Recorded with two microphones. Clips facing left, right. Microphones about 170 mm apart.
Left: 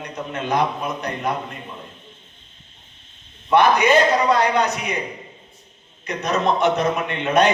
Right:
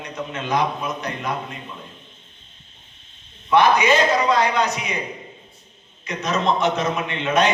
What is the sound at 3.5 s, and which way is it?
A man's voice, 55° left (ahead or behind).